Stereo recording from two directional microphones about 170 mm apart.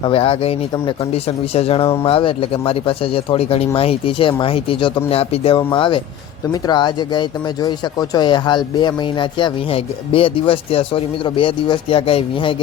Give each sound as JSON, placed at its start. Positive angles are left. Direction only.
{"t": 0.0, "sound": "speech", "side_deg": 30}